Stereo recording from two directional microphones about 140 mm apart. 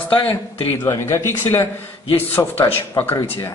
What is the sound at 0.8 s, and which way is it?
Speech, 20° left (ahead or behind).